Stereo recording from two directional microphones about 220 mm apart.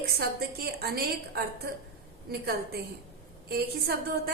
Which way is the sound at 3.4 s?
45° right (ahead or behind).